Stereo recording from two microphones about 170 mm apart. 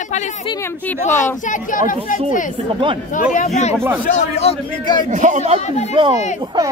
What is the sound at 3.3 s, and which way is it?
Speech, 45° left (ahead or behind).